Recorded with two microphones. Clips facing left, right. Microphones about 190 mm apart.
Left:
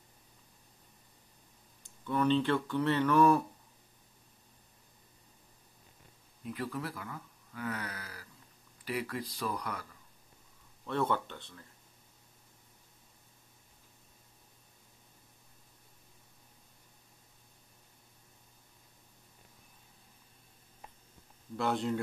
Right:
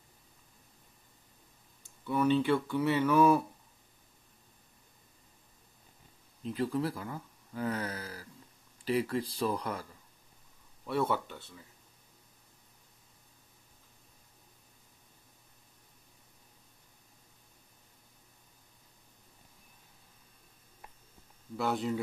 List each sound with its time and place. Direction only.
1.8 s speech: 10° right (ahead or behind)
6.4 s speech: 30° right (ahead or behind)
10.9 s speech: 10° right (ahead or behind)
21.5 s speech: centre (ahead or behind)